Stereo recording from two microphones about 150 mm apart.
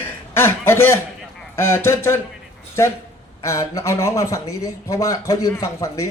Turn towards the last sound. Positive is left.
turn(degrees=20)  # may be behind; listen again after turning